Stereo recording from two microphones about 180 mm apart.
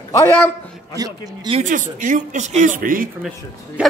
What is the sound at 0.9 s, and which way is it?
Speech, 20° right (ahead or behind).